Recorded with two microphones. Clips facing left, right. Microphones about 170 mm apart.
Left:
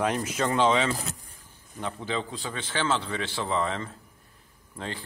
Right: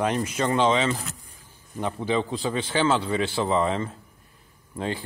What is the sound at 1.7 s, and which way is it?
Speech, 15° right (ahead or behind).